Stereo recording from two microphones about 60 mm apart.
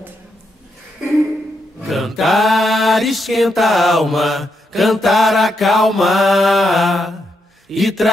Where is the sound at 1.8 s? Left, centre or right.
Centre.